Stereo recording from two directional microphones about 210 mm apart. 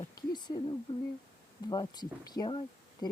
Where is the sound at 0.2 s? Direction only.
20° left (ahead or behind).